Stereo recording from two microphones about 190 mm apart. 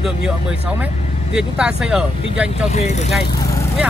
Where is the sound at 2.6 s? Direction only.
35° left (ahead or behind).